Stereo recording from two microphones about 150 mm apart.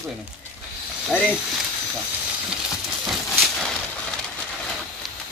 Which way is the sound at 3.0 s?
Centre (ahead or behind).